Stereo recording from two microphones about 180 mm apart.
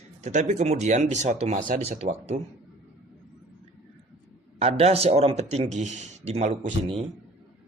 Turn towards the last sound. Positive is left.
turn(degrees=-35)  # may be behind; listen again after turning